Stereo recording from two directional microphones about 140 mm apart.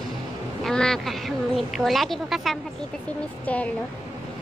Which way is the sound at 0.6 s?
5° left (ahead or behind).